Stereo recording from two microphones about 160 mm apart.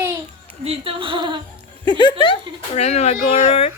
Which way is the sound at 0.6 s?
35° right (ahead or behind).